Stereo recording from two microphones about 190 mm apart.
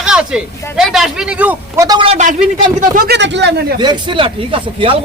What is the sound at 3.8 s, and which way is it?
Speech, 25° right (ahead or behind).